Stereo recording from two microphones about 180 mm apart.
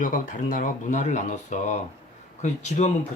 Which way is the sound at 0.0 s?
50° left (ahead or behind).